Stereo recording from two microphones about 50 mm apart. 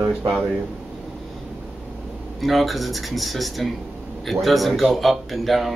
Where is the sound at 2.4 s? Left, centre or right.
Centre.